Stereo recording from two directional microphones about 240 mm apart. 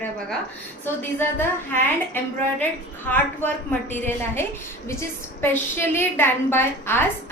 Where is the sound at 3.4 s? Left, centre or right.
Centre.